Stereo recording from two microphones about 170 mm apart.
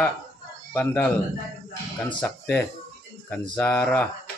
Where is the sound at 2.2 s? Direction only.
10° left (ahead or behind).